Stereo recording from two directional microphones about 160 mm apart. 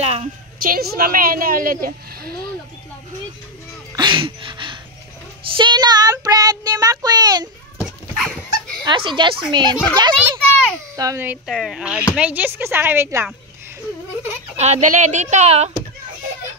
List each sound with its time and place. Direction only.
0.0 s a woman's voice: 40° right (ahead or behind)
0.6 s a woman's voice: 65° right (ahead or behind)
3.9 s a sound: 30° right (ahead or behind)
5.6 s child singing: 25° right (ahead or behind)
7.8 s dog: centre (ahead or behind)
8.8 s child singing: 30° right (ahead or behind)
11.0 s speech: 20° right (ahead or behind)
11.4 s speech: centre (ahead or behind)
14.6 s speech: 45° right (ahead or behind)